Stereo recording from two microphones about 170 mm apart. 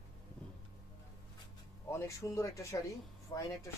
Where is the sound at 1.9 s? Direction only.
15° left (ahead or behind).